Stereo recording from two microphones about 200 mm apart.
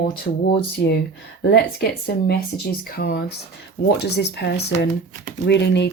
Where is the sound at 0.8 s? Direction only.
55° left (ahead or behind).